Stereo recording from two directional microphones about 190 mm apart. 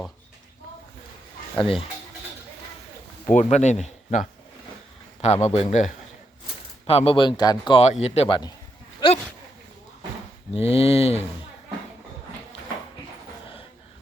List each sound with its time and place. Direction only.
1.5 s a man's voice: 30° left (ahead or behind)
3.2 s a man's voice: 40° left (ahead or behind)
10.5 s speech: 30° left (ahead or behind)